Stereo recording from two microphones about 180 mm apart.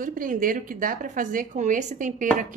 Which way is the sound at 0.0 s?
45° right (ahead or behind).